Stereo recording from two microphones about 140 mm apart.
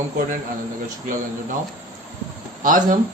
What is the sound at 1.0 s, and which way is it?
Speech, 70° right (ahead or behind).